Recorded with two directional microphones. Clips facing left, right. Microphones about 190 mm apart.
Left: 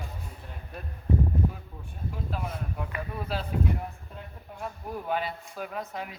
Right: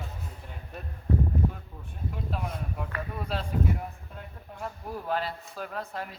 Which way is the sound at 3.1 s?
Centre (ahead or behind).